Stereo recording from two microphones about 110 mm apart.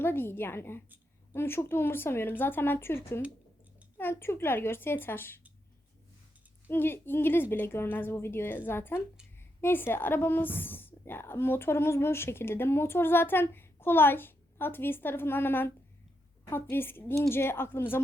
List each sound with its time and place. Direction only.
0.0 s a woman's voice: 20° left (ahead or behind)
6.7 s a woman's voice: 20° left (ahead or behind)